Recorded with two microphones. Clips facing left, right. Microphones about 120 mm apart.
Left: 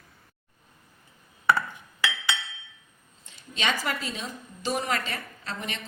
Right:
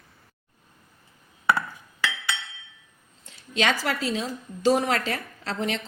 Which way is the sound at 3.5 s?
90° right.